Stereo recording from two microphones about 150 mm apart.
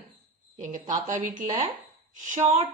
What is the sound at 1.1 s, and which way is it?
Speech, 60° right (ahead or behind).